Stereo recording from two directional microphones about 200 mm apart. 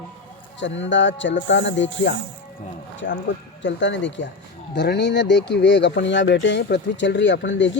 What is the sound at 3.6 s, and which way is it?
Speech, 65° left (ahead or behind).